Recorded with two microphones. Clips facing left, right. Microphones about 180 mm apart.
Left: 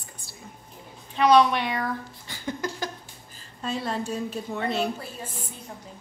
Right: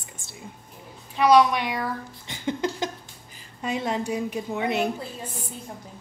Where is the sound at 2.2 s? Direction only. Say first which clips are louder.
Right 5 dB; 20° right (ahead or behind).